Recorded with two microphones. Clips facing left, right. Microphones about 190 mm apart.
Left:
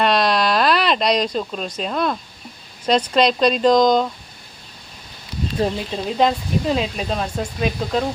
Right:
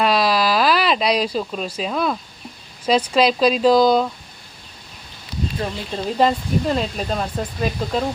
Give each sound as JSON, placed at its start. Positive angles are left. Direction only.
{"t": 0.0, "sound": "a sound", "side_deg": -5}
{"t": 2.8, "sound": "speech", "side_deg": -5}
{"t": 5.6, "sound": "speech", "side_deg": 35}
{"t": 6.1, "sound": "speech", "side_deg": 0}